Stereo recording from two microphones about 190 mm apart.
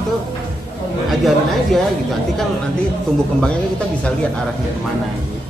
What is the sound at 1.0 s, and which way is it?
Speech, centre (ahead or behind).